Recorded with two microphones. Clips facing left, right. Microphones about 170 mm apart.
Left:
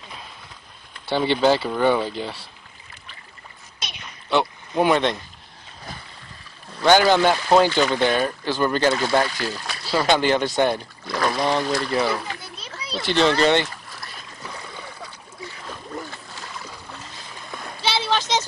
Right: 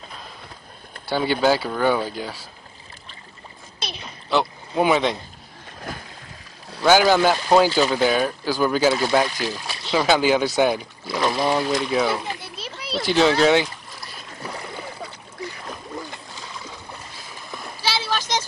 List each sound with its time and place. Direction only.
1.0 s speech: 5° right (ahead or behind)
4.3 s speech: centre (ahead or behind)
6.8 s speech: 5° right (ahead or behind)
14.4 s a sound: 20° right (ahead or behind)
15.6 s splash: 15° right (ahead or behind)
17.5 s splash: 5° right (ahead or behind)
17.8 s a sound: 25° left (ahead or behind)